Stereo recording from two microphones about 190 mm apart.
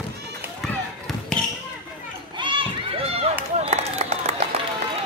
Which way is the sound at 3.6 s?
35° right (ahead or behind).